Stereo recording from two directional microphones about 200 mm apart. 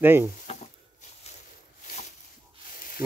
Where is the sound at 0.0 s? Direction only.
10° right (ahead or behind).